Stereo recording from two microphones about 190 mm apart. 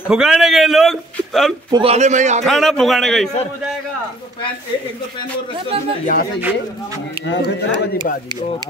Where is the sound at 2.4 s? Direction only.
Centre (ahead or behind).